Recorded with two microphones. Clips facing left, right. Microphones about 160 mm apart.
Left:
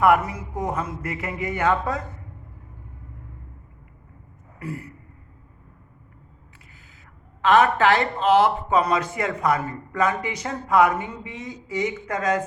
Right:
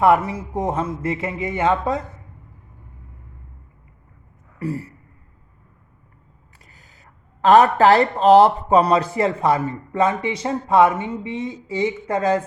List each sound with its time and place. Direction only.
0.0 s a man's voice: 25° right (ahead or behind)
4.6 s a sound: 30° right (ahead or behind)
7.4 s a man's voice: 35° right (ahead or behind)